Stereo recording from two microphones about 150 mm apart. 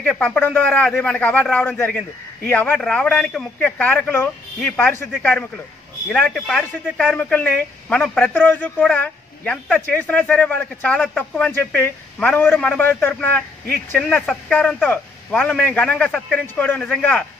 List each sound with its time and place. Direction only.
0.0 s speech: 10° left (ahead or behind)